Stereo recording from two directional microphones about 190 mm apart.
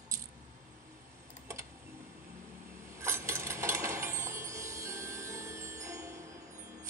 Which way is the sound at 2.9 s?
15° right (ahead or behind).